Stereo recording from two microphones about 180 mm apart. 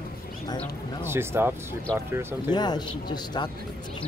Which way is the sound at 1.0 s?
15° right (ahead or behind).